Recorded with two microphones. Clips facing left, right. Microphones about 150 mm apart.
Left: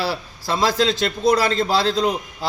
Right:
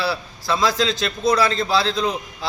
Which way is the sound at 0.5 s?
30° left (ahead or behind).